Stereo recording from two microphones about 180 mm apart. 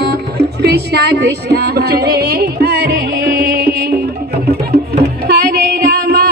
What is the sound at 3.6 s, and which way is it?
Music, 60° right (ahead or behind).